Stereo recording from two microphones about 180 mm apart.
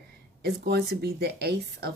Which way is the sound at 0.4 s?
65° right (ahead or behind).